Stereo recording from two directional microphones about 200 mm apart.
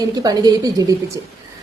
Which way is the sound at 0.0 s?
20° right (ahead or behind).